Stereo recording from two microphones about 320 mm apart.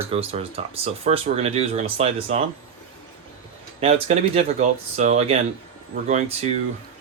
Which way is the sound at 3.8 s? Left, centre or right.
Centre.